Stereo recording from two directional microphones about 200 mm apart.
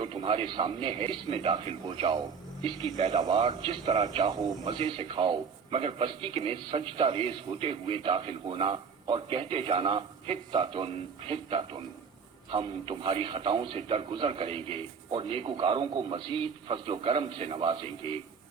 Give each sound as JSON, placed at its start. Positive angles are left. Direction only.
{"t": 0.0, "sound": "a man's voice", "side_deg": -25}